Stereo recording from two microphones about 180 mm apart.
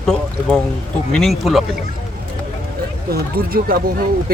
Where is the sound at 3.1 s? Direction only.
55° right (ahead or behind).